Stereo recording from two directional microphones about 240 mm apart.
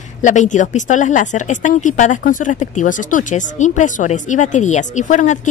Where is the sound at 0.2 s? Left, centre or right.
Left.